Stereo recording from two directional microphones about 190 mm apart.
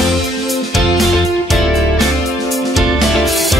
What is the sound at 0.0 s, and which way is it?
Music, centre (ahead or behind).